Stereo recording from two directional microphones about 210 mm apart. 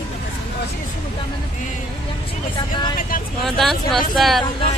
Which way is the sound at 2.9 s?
40° left (ahead or behind).